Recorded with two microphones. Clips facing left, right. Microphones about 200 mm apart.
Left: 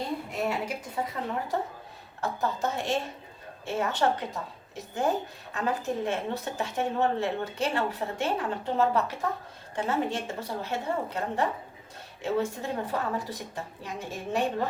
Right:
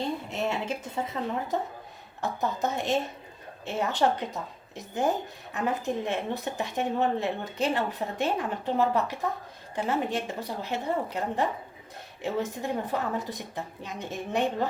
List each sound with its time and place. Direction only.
0.3 s a woman's voice: 25° right (ahead or behind)